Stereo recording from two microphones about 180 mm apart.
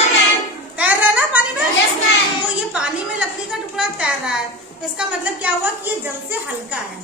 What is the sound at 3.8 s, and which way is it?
A woman's voice, 5° right (ahead or behind).